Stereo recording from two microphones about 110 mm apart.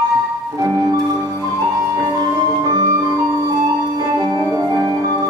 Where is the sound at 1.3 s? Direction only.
25° right (ahead or behind).